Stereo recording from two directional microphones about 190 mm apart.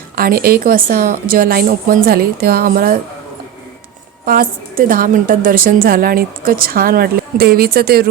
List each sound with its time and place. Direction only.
0.2 s a woman's voice: 50° right (ahead or behind)
4.3 s a woman's voice: 50° right (ahead or behind)